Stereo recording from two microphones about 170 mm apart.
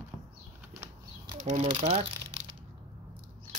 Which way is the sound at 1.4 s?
45° right (ahead or behind).